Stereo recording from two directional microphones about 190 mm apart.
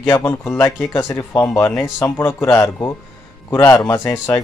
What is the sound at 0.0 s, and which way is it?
Speech, 15° left (ahead or behind).